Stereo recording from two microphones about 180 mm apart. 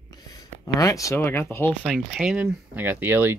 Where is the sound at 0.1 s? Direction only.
20° left (ahead or behind).